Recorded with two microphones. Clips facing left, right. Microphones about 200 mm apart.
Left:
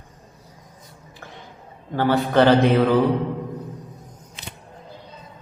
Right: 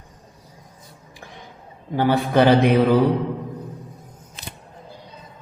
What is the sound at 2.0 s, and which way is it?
Speech, 15° right (ahead or behind).